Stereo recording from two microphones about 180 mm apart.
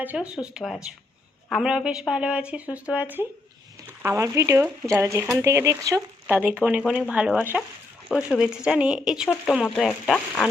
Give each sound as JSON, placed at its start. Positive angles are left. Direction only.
{"t": 0.0, "sound": "speech", "side_deg": -10}